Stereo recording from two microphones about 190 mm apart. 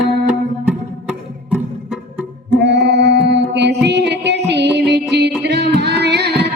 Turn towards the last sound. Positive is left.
turn(degrees=-60)  # may be behind; listen again after turning